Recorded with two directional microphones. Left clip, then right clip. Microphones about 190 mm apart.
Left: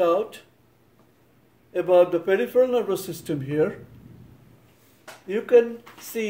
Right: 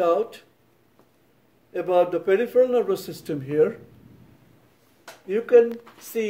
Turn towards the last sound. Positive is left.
turn(degrees=-25)  # may be behind; listen again after turning